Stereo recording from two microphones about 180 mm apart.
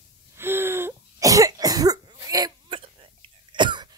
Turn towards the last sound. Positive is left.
turn(degrees=-25)  # may be behind; listen again after turning